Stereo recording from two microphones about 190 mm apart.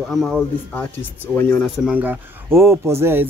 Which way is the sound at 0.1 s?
Centre (ahead or behind).